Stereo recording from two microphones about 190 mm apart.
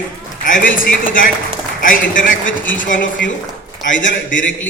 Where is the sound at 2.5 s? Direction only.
80° left.